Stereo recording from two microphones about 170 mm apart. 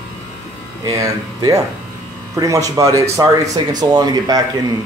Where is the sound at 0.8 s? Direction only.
20° right (ahead or behind).